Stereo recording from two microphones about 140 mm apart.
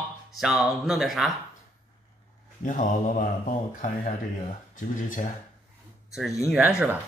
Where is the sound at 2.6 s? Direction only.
65° left (ahead or behind).